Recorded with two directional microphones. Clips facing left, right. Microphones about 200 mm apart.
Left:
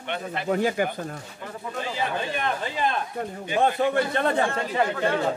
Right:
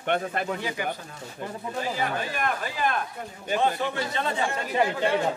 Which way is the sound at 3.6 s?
55° left (ahead or behind).